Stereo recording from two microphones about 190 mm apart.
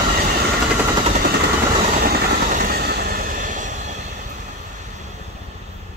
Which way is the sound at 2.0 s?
50° right (ahead or behind).